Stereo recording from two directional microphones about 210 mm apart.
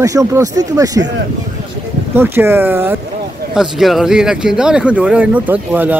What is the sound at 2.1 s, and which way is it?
Speech, 10° right (ahead or behind).